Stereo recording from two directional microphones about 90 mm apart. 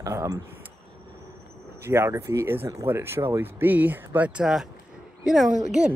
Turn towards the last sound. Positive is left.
turn(degrees=-5)  # may be behind; listen again after turning